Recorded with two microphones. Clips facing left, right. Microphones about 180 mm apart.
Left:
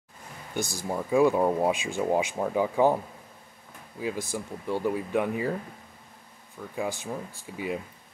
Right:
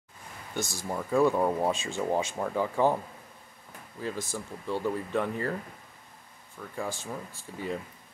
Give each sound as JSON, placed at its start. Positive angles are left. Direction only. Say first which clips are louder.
{"t": 0.7, "sound": "speech", "louder": "left 3 dB", "side_deg": 15}
{"t": 4.0, "sound": "speech", "louder": "left 3 dB", "side_deg": 15}
{"t": 6.7, "sound": "speech", "louder": "left 3 dB", "side_deg": 15}